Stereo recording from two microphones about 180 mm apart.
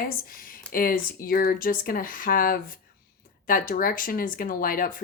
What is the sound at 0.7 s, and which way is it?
Speech, 50° left (ahead or behind).